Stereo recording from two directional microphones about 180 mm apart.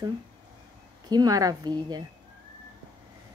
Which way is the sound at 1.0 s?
20° right (ahead or behind).